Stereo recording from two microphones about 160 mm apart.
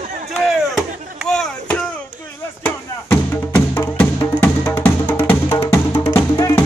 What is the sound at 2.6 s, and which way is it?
Music, 10° left (ahead or behind).